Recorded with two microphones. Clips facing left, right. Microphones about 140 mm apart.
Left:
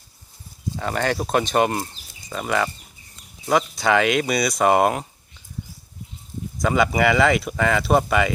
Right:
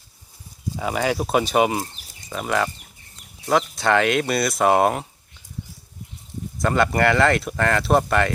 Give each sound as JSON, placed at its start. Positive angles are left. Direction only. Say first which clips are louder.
{"t": 0.8, "sound": "speech", "louder": "right 1 dB", "side_deg": -5}
{"t": 3.4, "sound": "speech", "louder": "even", "side_deg": -70}
{"t": 3.8, "sound": "speech", "louder": "even", "side_deg": 0}
{"t": 6.6, "sound": "speech", "louder": "even", "side_deg": 0}